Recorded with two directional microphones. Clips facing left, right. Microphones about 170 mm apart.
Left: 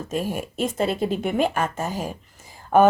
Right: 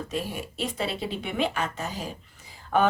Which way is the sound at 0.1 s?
45° left (ahead or behind).